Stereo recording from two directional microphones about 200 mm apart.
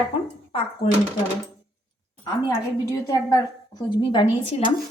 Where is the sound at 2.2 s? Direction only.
15° left (ahead or behind).